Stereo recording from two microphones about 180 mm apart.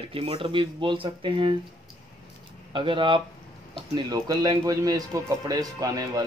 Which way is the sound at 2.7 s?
30° right (ahead or behind).